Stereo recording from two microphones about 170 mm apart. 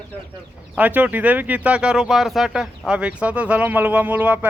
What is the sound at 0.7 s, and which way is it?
Speech, 10° right (ahead or behind).